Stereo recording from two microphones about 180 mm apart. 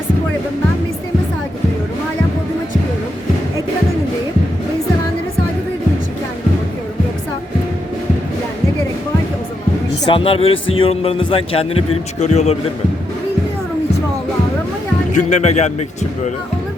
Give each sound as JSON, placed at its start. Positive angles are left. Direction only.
{"t": 10.1, "sound": "speech", "side_deg": 30}
{"t": 15.1, "sound": "speech", "side_deg": 40}